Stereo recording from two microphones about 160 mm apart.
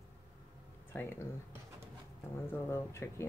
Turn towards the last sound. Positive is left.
turn(degrees=15)  # may be behind; listen again after turning